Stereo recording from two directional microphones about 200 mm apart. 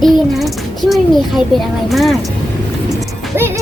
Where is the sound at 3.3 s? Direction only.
10° right (ahead or behind).